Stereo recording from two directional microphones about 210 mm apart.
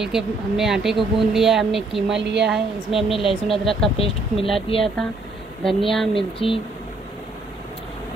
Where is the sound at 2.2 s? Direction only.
55° right (ahead or behind).